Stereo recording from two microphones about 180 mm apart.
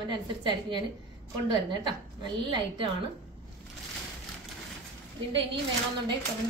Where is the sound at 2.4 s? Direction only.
25° right (ahead or behind).